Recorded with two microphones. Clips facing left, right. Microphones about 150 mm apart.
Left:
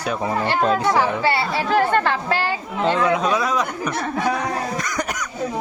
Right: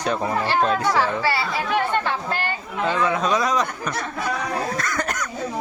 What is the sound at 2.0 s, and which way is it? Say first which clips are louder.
Speech: left 4 dB; 80° left.